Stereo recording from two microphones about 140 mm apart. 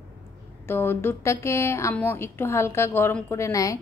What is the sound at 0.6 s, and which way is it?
A woman's voice, 15° left (ahead or behind).